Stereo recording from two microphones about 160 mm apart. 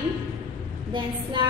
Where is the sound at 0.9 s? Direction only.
30° right (ahead or behind).